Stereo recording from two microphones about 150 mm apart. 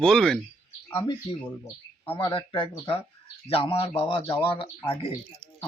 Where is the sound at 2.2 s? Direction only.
35° left (ahead or behind).